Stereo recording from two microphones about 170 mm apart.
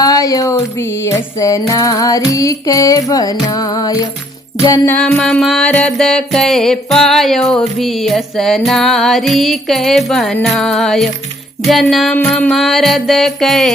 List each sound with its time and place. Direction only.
0.0 s music: 20° left (ahead or behind)
4.9 s music: 5° left (ahead or behind)